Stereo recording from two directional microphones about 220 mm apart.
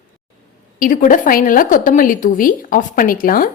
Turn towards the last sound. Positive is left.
turn(degrees=40)  # may be behind; listen again after turning